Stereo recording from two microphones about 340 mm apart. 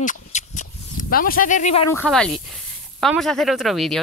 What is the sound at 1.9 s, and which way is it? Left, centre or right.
Speech, centre.